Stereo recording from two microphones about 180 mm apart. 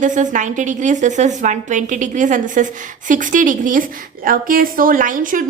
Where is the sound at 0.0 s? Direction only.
45° right (ahead or behind).